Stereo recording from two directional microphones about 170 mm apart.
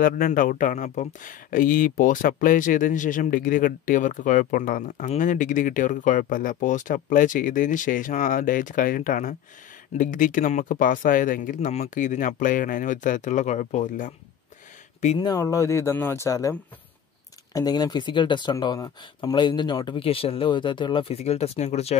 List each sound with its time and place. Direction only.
0.0 s speech: 55° left (ahead or behind)
15.1 s speech: 20° left (ahead or behind); by 21.9 s 40° left (ahead or behind)